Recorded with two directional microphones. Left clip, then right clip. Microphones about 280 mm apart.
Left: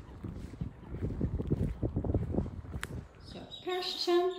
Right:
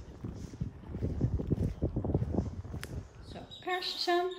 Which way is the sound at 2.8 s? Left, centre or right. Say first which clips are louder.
Left 6 dB; centre.